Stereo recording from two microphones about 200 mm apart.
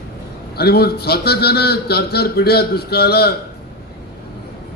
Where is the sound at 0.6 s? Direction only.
55° left (ahead or behind).